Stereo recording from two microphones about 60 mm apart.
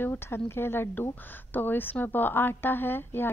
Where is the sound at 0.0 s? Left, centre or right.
Left.